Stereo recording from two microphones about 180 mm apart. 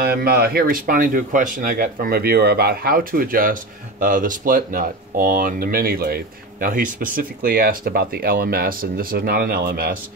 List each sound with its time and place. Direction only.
0.0 s speech: 60° right (ahead or behind)